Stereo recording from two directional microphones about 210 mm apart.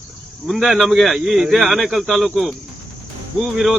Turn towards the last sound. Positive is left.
turn(degrees=0)  # may be behind; listen again after turning